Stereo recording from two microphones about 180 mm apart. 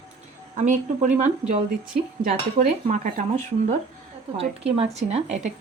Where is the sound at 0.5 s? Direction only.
45° right (ahead or behind).